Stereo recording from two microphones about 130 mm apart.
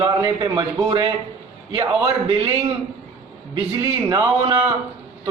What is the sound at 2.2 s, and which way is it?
Speech, 45° right (ahead or behind).